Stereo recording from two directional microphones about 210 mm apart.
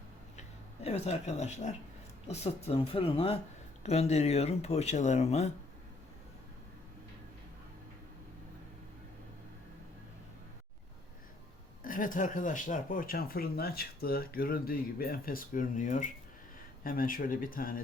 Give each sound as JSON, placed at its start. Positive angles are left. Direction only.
{"t": 0.9, "sound": "speech", "side_deg": 30}
{"t": 11.8, "sound": "speech", "side_deg": 40}